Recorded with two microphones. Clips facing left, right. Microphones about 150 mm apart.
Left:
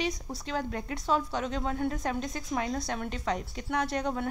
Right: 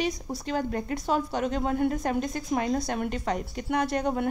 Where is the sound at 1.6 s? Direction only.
5° right (ahead or behind).